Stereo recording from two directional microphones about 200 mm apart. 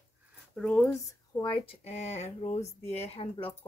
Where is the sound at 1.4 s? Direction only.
25° left (ahead or behind).